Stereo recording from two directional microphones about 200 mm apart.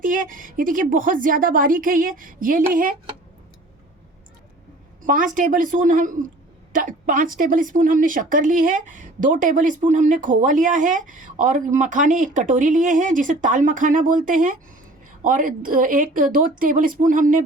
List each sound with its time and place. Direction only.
0.0 s a woman's voice: 45° right (ahead or behind)
5.0 s a woman's voice: 40° right (ahead or behind)